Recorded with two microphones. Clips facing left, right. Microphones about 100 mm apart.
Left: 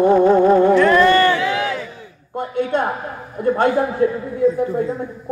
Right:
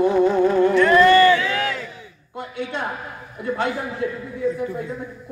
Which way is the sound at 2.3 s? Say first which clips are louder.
Left 8 dB; 50° left (ahead or behind).